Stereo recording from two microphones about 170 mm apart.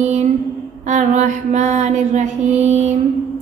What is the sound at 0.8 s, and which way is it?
Speech, 45° right (ahead or behind).